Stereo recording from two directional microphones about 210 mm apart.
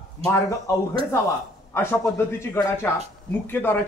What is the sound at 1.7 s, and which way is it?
A man's voice, 10° left (ahead or behind).